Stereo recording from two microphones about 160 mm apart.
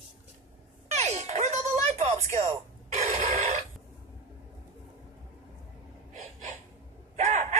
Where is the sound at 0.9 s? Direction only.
45° right (ahead or behind).